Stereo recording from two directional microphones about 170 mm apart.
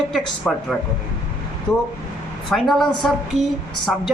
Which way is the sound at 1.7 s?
25° left (ahead or behind).